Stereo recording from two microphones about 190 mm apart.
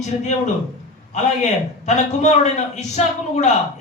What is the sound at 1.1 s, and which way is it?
A man's voice, 35° left (ahead or behind).